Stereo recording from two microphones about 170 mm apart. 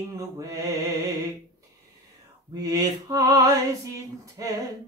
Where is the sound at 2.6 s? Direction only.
20° right (ahead or behind).